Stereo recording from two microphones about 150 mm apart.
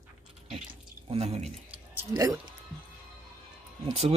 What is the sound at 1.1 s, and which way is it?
Speech, 45° right (ahead or behind).